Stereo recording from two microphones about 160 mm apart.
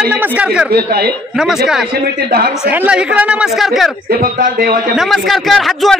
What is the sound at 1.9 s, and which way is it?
Speech, 75° right (ahead or behind).